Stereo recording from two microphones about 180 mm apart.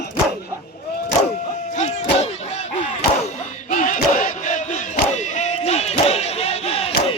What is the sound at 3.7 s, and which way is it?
Battle cry, 45° left (ahead or behind).